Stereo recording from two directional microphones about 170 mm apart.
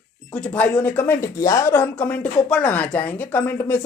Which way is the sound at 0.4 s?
10° left (ahead or behind).